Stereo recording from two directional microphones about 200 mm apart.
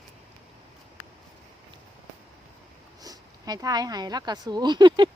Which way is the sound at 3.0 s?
20° right (ahead or behind).